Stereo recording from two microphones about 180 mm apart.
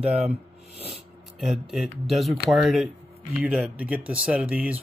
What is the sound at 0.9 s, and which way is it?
Speech, centre (ahead or behind).